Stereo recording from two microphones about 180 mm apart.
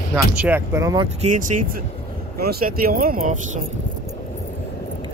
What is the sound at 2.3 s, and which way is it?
Speech, 60° right (ahead or behind).